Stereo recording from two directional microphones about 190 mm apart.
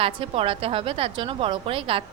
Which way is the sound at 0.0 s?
30° right (ahead or behind).